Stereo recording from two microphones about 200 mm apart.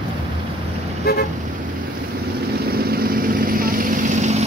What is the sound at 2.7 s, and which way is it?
Vehicle, 50° right (ahead or behind).